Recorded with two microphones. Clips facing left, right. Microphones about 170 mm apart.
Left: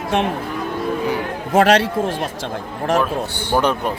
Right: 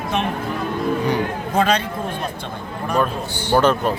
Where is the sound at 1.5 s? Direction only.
90° left.